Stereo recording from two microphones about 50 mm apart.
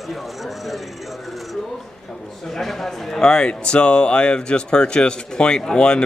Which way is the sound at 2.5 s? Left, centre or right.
Centre.